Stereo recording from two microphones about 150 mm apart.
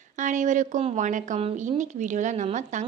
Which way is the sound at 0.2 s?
55° right (ahead or behind).